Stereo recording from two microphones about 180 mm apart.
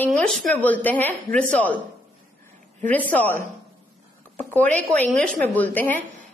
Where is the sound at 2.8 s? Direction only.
10° left (ahead or behind).